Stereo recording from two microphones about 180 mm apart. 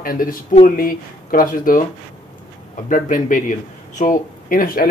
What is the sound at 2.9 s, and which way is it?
Speech, 45° left (ahead or behind).